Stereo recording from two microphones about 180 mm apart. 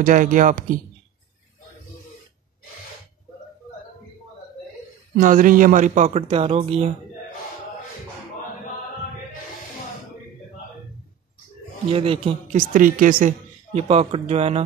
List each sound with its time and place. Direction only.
0.0 s a woman's voice: 45° right (ahead or behind)
5.1 s speech: 50° right (ahead or behind); by 6.9 s 30° right (ahead or behind)
11.9 s speech: 30° right (ahead or behind)
12.5 s a woman's voice: 50° right (ahead or behind)
13.7 s speech: 35° right (ahead or behind)